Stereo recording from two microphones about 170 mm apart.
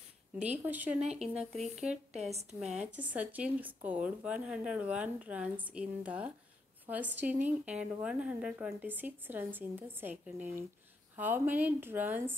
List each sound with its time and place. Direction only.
0.4 s speech: 10° right (ahead or behind)
1.0 s speech: 40° right (ahead or behind)
1.5 s speech: centre (ahead or behind)